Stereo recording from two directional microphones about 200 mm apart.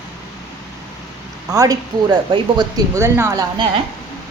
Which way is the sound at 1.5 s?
20° right (ahead or behind).